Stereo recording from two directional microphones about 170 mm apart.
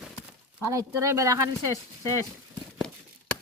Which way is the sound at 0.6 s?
20° right (ahead or behind).